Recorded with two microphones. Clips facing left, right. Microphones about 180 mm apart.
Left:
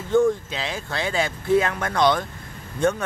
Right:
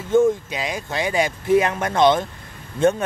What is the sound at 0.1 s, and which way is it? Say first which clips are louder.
Speech: right 2 dB; 15° right (ahead or behind).